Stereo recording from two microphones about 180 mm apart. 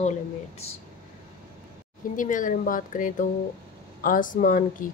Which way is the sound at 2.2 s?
45° left (ahead or behind).